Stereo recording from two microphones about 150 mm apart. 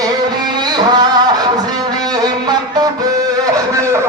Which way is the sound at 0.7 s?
30° right (ahead or behind).